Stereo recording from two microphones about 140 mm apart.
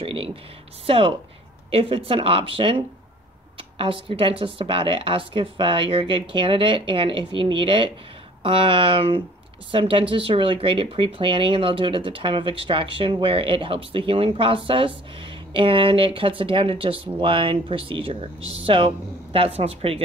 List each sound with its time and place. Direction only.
0.0 s speech: 40° right (ahead or behind)